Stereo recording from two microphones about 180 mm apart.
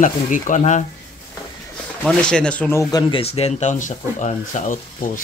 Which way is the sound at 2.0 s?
5° left (ahead or behind).